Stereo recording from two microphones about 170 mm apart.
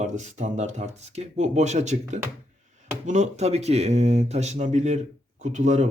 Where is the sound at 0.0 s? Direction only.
45° right (ahead or behind).